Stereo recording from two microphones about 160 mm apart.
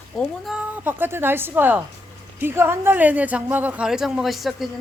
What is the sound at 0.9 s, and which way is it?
A woman's voice, 15° right (ahead or behind).